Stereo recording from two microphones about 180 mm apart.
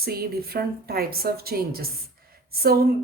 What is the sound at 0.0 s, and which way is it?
A woman's voice, 60° right (ahead or behind).